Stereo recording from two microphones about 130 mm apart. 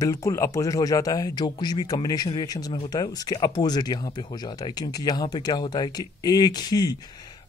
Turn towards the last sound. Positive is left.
turn(degrees=30)  # may be behind; listen again after turning